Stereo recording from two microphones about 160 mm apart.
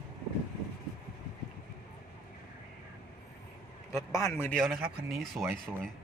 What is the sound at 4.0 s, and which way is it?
Speech, 20° left (ahead or behind).